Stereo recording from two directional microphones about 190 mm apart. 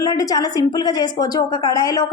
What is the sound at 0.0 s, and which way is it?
A woman's voice, 20° left (ahead or behind).